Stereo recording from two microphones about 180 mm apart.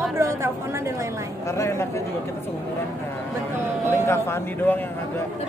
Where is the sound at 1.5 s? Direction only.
15° left (ahead or behind).